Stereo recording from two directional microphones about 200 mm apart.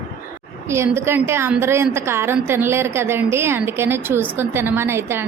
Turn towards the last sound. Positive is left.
turn(degrees=-10)  # may be behind; listen again after turning